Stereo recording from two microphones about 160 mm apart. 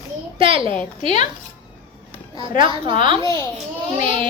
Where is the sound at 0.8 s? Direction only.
45° left (ahead or behind).